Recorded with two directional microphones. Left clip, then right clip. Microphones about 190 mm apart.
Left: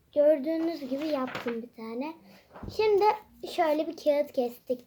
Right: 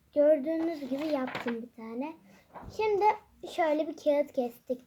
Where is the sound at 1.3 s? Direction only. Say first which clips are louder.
Left 1 dB; 30° right (ahead or behind).